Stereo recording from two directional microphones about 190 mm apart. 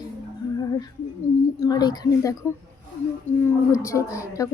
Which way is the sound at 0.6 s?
20° left (ahead or behind).